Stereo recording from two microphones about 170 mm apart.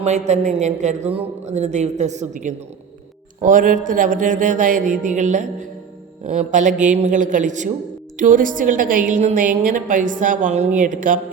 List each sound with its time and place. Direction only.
0.0 s a woman's voice: 40° right (ahead or behind)